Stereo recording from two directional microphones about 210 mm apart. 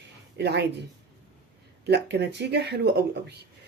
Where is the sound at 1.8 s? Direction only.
55° right (ahead or behind).